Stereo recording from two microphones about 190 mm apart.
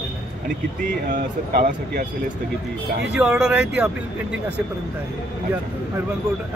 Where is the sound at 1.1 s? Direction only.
55° right (ahead or behind).